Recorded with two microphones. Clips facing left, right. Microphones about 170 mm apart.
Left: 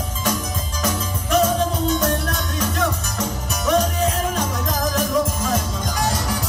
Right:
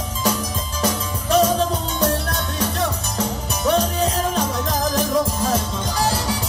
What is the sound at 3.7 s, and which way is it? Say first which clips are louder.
Music: even; 30° right (ahead or behind).